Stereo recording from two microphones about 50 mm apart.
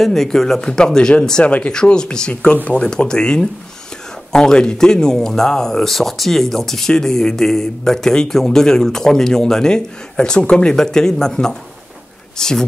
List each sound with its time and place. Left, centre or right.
0.0 s speech: centre
1.4 s speech: left
2.8 s speech: centre